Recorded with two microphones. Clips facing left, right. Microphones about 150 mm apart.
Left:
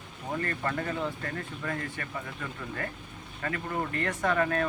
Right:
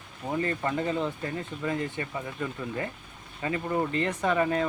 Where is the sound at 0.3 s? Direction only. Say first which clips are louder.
Right 3 dB; 15° right (ahead or behind).